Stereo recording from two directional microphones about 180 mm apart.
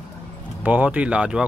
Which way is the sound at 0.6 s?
10° right (ahead or behind).